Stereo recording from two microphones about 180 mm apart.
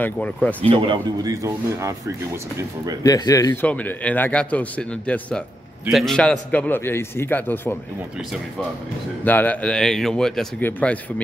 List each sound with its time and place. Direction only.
0.0 s a man's voice: 10° left (ahead or behind)
0.7 s a man's voice: 30° right (ahead or behind)
3.0 s speech: 20° left (ahead or behind)
3.6 s a man's voice: 5° left (ahead or behind)
9.2 s a man's voice: 10° left (ahead or behind)